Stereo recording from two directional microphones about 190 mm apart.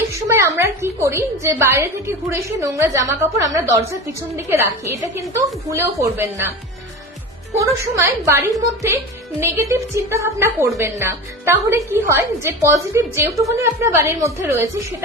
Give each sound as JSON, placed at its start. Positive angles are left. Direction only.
{"t": 0.1, "sound": "a woman's voice", "side_deg": -15}
{"t": 7.6, "sound": "a woman's voice", "side_deg": -15}